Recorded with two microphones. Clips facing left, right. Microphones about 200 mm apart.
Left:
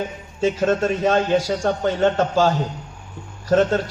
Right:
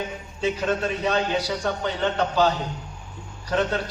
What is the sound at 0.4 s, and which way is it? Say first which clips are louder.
A man's voice: left 5 dB; 45° left (ahead or behind).